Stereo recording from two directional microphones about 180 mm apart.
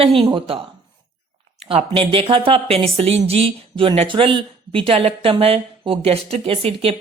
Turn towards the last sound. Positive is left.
turn(degrees=-30)  # may be behind; listen again after turning